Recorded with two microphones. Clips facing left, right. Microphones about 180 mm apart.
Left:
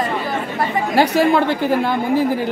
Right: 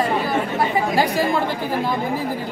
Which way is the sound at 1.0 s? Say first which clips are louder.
Left 8 dB; 70° left (ahead or behind).